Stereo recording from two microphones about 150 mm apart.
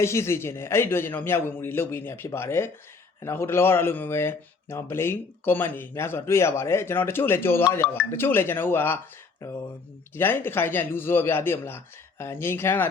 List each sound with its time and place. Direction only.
0.0 s speech: 20° left (ahead or behind)